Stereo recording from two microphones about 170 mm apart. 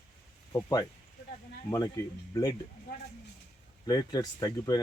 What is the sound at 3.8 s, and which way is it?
Speech, 25° left (ahead or behind).